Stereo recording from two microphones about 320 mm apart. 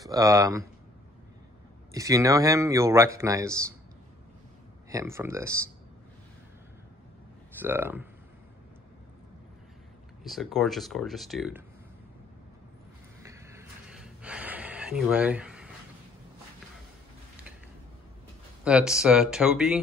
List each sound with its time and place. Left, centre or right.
0.0 s speech: centre
1.9 s speech: centre
4.8 s speech: centre
7.6 s speech: centre
10.2 s speech: centre
13.2 s gasp: centre
18.6 s speech: centre